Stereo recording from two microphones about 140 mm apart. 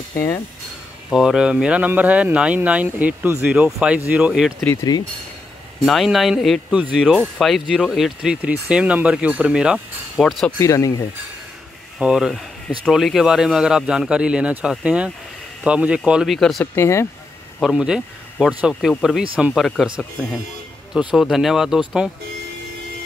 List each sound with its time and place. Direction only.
1.1 s speech: 5° right (ahead or behind)
5.8 s speech: centre (ahead or behind)
10.6 s speech: 25° left (ahead or behind)
12.0 s speech: 5° right (ahead or behind)
16.7 s speech: 20° left (ahead or behind)
17.6 s speech: 5° right (ahead or behind)
20.9 s speech: 5° right (ahead or behind)